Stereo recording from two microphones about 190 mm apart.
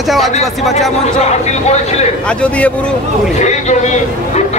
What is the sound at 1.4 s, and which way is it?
Speech, 35° left (ahead or behind).